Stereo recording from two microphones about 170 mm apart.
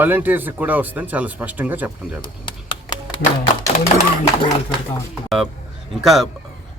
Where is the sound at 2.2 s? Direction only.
25° left (ahead or behind).